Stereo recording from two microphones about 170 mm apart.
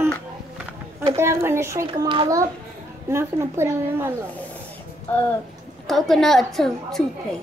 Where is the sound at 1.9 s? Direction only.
30° right (ahead or behind); by 4.1 s 15° right (ahead or behind).